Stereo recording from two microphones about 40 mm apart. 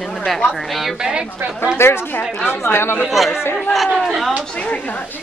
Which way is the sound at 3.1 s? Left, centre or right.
Centre.